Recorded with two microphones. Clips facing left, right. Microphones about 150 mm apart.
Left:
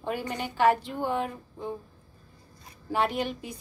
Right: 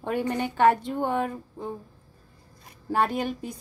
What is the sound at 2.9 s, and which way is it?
Speech, 45° right (ahead or behind).